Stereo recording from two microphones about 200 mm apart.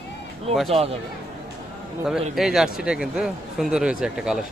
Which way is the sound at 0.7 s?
30° right (ahead or behind).